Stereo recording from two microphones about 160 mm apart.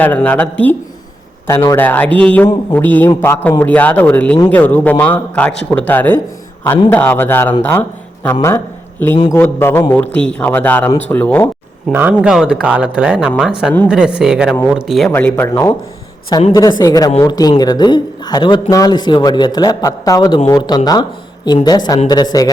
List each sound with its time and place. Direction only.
0.0 s a man's voice: 10° left (ahead or behind)
11.9 s speech: 15° right (ahead or behind)
15.1 s a man's voice: 10° left (ahead or behind)